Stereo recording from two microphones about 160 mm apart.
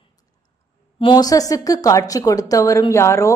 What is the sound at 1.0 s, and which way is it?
A woman's voice, 25° left (ahead or behind).